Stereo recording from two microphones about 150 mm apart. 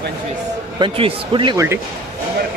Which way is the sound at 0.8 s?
35° right (ahead or behind).